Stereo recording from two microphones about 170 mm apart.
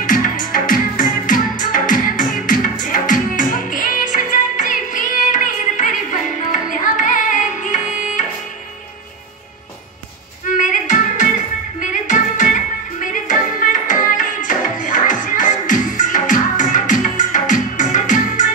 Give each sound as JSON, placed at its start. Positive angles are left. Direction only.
{"t": 0.0, "sound": "music", "side_deg": 50}
{"t": 10.6, "sound": "music", "side_deg": 45}